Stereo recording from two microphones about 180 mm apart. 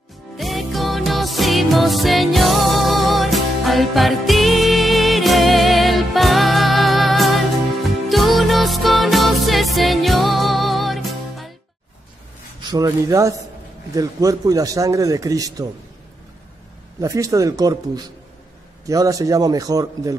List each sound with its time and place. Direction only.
0.4 s music: centre (ahead or behind)
12.7 s a man's voice: 15° right (ahead or behind)
17.0 s a man's voice: 20° right (ahead or behind)